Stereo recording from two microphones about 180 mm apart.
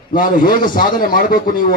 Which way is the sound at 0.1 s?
50° left (ahead or behind).